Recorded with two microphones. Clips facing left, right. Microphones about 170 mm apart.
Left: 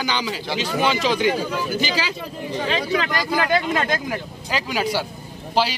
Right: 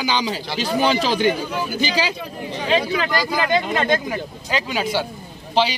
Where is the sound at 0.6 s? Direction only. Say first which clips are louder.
Right 3 dB; 35° right (ahead or behind).